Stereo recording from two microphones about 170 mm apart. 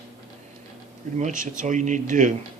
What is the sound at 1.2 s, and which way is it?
Speech, 50° right (ahead or behind).